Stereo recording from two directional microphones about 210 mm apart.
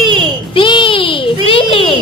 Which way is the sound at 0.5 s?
25° left (ahead or behind).